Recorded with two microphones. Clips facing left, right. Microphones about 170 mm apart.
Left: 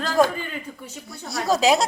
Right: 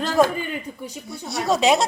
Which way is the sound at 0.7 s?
20° right (ahead or behind).